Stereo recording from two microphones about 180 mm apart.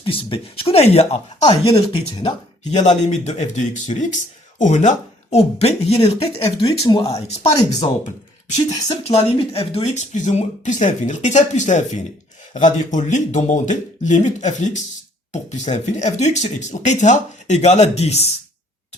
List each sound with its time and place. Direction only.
0.0 s speech: 30° left (ahead or behind)
2.7 s speech: 40° left (ahead or behind)
6.8 s speech: 20° left (ahead or behind)
9.0 s speech: 35° left (ahead or behind)